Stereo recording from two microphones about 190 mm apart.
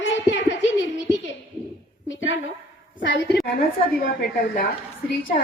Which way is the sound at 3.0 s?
65° left (ahead or behind).